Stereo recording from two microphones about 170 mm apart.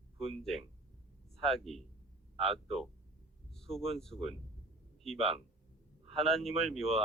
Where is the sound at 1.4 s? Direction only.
Centre (ahead or behind).